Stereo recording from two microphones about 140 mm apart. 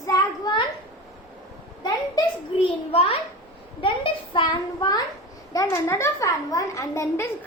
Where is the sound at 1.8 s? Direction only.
35° left (ahead or behind).